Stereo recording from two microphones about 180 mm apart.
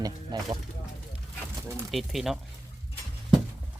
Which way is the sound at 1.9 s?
Centre (ahead or behind).